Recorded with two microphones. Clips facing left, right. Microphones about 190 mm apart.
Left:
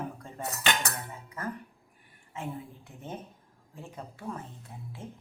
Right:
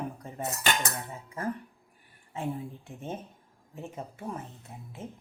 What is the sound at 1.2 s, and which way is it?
Speech, 30° right (ahead or behind).